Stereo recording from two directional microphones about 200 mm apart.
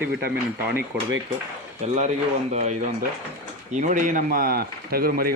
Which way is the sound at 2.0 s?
35° right (ahead or behind).